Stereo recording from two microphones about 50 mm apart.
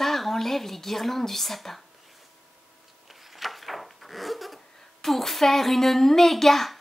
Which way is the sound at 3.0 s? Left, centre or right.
Centre.